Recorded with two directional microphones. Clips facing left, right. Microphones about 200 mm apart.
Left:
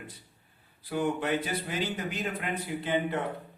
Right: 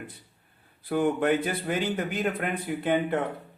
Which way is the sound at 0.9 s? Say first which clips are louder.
Right 5 dB; 55° right (ahead or behind).